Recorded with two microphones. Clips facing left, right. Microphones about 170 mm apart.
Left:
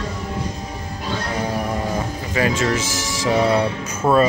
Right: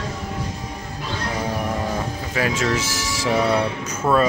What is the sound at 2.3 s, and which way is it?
Speech, centre (ahead or behind).